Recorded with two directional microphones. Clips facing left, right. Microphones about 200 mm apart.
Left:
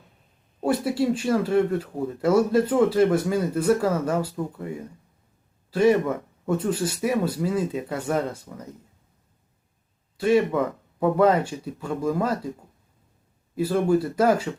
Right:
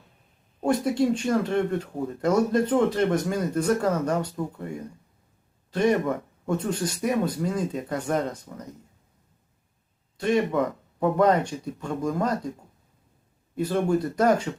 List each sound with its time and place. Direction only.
0.6 s speech: 5° left (ahead or behind)
5.7 s speech: 5° left (ahead or behind)
10.2 s speech: 5° left (ahead or behind)
13.6 s speech: 5° left (ahead or behind)